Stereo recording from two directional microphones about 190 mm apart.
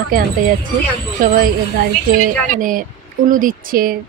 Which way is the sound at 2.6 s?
45° right (ahead or behind).